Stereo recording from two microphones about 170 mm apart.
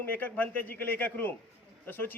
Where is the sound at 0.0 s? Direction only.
10° left (ahead or behind).